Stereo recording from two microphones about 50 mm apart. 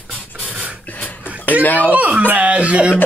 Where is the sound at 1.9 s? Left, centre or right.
Right.